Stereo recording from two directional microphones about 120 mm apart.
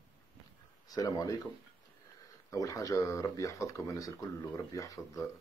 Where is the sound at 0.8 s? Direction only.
30° left (ahead or behind).